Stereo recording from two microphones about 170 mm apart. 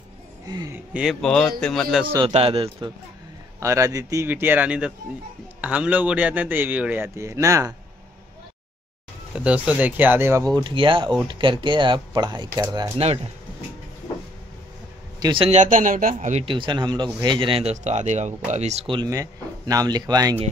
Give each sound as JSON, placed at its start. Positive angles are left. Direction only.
{"t": 0.7, "sound": "a man's voice", "side_deg": -5}
{"t": 1.2, "sound": "speech", "side_deg": 5}
{"t": 2.1, "sound": "a man's voice", "side_deg": -35}
{"t": 3.5, "sound": "a man's voice", "side_deg": -20}
{"t": 9.3, "sound": "a man's voice", "side_deg": -5}
{"t": 15.1, "sound": "a man's voice", "side_deg": -25}
{"t": 16.4, "sound": "a man's voice", "side_deg": -30}